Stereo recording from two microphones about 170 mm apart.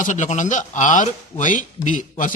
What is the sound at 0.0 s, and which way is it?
A man's voice, 45° left (ahead or behind).